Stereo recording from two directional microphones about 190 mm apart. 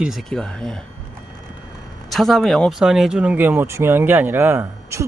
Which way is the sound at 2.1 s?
Centre (ahead or behind).